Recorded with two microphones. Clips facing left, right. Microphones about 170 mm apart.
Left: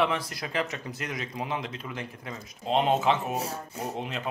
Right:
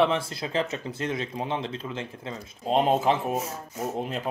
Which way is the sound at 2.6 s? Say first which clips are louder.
Right 2 dB; 40° right (ahead or behind).